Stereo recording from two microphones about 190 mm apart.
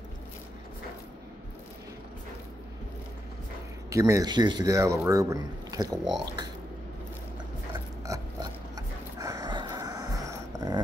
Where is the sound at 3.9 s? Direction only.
15° right (ahead or behind).